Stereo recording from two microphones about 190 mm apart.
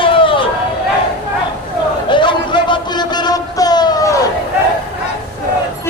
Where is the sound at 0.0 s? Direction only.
25° left (ahead or behind).